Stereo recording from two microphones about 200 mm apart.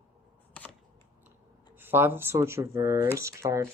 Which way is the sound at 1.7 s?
10° right (ahead or behind).